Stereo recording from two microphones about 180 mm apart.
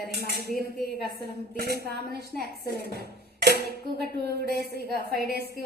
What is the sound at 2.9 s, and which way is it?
Speech, 60° right (ahead or behind).